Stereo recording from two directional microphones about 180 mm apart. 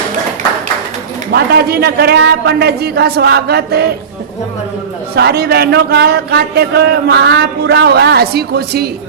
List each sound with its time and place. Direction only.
1.3 s speech: 65° right (ahead or behind)
5.1 s speech: 65° right (ahead or behind)